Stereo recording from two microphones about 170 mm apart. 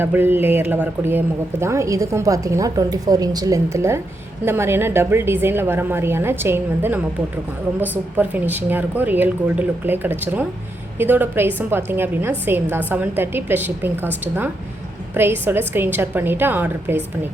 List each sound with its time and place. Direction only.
0.0 s speech: 10° right (ahead or behind)